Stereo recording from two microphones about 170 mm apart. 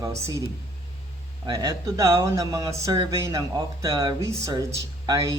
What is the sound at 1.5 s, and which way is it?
Speech, 20° right (ahead or behind).